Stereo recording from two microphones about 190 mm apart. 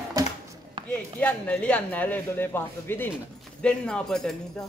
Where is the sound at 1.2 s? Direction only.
10° left (ahead or behind).